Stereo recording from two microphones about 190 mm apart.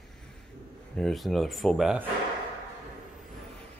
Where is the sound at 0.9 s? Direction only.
Centre (ahead or behind).